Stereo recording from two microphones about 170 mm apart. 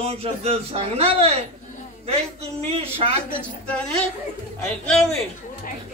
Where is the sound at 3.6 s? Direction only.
5° left (ahead or behind).